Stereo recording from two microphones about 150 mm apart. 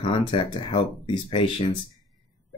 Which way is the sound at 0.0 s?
35° left (ahead or behind).